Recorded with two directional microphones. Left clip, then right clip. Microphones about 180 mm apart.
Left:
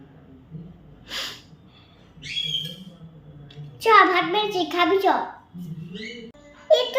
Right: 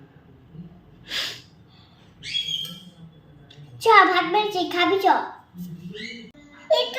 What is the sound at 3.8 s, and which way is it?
A child's voice, 20° left (ahead or behind).